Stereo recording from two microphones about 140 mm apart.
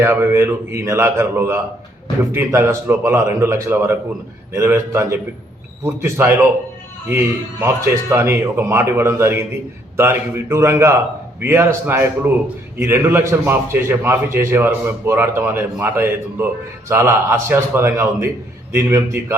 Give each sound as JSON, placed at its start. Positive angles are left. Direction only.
{"t": 0.0, "sound": "a man's voice", "side_deg": -15}